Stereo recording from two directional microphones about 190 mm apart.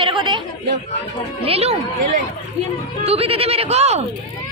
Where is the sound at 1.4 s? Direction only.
30° right (ahead or behind).